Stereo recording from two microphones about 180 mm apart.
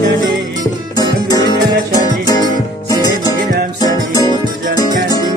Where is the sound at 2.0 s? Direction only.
20° left (ahead or behind).